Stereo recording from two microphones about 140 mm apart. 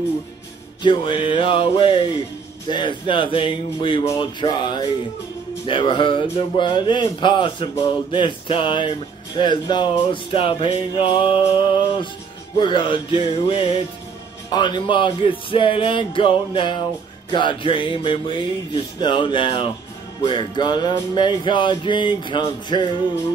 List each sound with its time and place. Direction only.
0.8 s music: 35° left (ahead or behind)